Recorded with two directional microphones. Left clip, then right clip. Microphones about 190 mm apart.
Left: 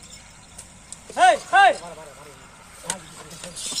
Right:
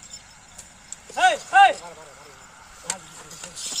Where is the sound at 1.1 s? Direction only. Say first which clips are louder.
Left 1 dB; 10° right (ahead or behind).